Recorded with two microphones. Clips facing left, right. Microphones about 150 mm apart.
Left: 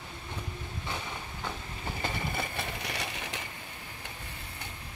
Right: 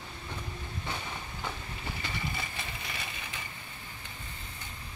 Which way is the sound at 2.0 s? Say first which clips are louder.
Left 5 dB; 50° left (ahead or behind).